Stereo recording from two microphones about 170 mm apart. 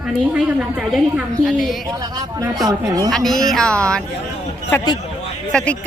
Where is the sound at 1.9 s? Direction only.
20° right (ahead or behind).